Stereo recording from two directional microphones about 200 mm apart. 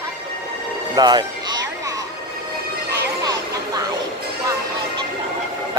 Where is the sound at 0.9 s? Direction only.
20° right (ahead or behind).